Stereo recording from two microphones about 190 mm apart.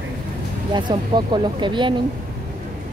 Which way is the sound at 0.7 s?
25° right (ahead or behind).